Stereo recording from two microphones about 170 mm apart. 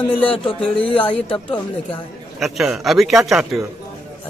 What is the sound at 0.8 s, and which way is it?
Speech, 30° left (ahead or behind).